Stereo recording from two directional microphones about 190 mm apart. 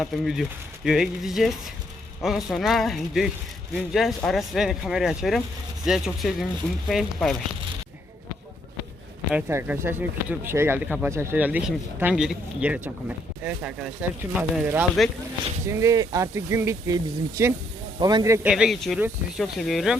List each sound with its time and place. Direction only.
0.0 s speech: centre (ahead or behind)
9.3 s speech: 10° right (ahead or behind)
18.4 s speech: 5° right (ahead or behind)